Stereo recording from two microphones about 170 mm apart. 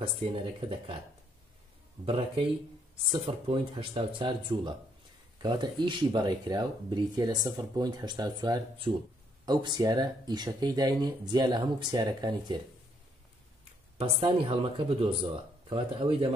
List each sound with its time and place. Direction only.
0.2 s speech: 30° right (ahead or behind)
2.0 s speech: 30° right (ahead or behind)
13.9 s speech: 30° right (ahead or behind)